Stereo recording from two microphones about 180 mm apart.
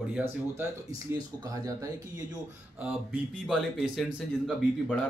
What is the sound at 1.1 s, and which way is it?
Speech, 20° right (ahead or behind).